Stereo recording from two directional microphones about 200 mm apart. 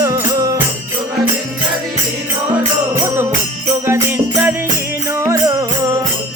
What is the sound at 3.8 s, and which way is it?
Music, 10° right (ahead or behind).